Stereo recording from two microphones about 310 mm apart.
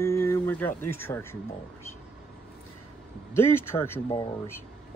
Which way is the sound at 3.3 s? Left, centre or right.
Centre.